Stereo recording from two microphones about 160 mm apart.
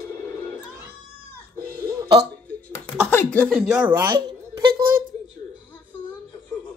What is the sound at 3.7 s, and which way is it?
Speech, 10° right (ahead or behind).